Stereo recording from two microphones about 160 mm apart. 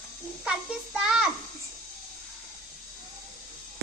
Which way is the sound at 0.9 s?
5° right (ahead or behind).